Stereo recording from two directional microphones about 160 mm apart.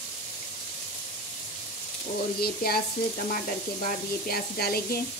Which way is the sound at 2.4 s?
75° left (ahead or behind).